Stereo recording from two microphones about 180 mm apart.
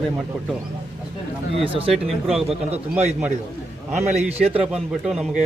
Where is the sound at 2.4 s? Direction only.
35° right (ahead or behind).